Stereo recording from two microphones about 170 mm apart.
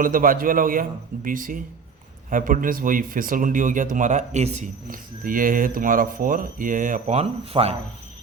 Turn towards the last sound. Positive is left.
turn(degrees=-35)  # may be behind; listen again after turning